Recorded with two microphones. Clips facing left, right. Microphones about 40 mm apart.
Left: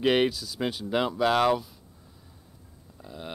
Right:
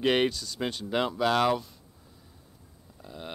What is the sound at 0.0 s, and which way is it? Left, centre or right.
Speech, centre.